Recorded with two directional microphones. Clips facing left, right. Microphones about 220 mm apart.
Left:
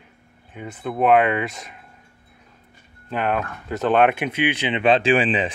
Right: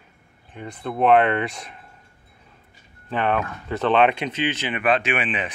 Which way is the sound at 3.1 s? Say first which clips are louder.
Even; 5° left (ahead or behind).